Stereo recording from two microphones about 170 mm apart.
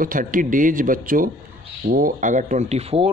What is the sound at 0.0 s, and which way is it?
A man's voice, 55° right (ahead or behind).